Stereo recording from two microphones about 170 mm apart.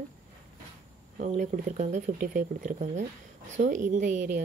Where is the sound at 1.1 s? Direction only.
45° right (ahead or behind).